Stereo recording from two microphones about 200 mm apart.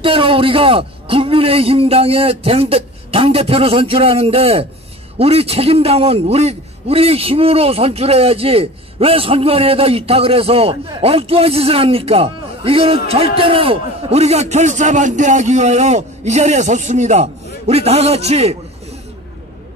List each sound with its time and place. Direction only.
0.0 s a man's voice: 25° right (ahead or behind)